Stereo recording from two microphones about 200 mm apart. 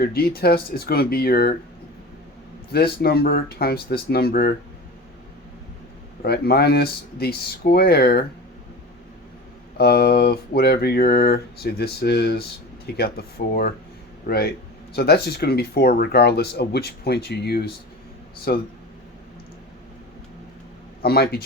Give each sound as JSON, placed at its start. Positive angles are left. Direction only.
{"t": 0.0, "sound": "speech", "side_deg": 50}
{"t": 2.7, "sound": "speech", "side_deg": 50}
{"t": 6.2, "sound": "speech", "side_deg": 50}
{"t": 9.7, "sound": "speech", "side_deg": 50}
{"t": 21.0, "sound": "speech", "side_deg": 50}